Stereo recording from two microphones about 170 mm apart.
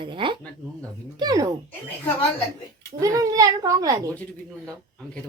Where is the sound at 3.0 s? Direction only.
20° right (ahead or behind).